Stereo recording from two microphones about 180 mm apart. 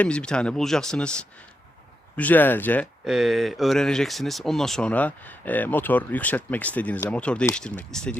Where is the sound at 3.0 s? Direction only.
Centre (ahead or behind).